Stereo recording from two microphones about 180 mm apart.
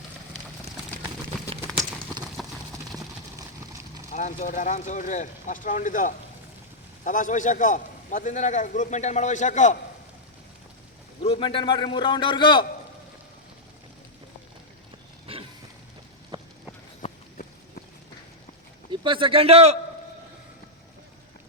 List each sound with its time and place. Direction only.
1.6 s a sound: 20° right (ahead or behind)
3.3 s clip-clop: 20° right (ahead or behind)
4.1 s a man's voice: 40° left (ahead or behind)
11.2 s a man's voice: 30° left (ahead or behind)
15.3 s a sound: 35° right (ahead or behind)
18.9 s a man's voice: 30° right (ahead or behind)